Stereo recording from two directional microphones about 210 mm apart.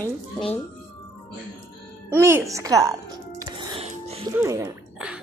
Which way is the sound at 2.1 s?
10° right (ahead or behind).